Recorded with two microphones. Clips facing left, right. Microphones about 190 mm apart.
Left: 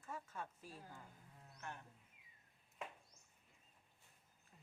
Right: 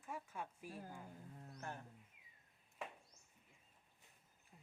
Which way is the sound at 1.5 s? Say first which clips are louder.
Right 2 dB; 35° right (ahead or behind).